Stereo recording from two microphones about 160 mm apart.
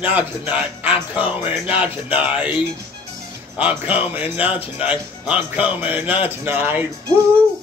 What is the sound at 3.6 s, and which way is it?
Speech, 10° right (ahead or behind).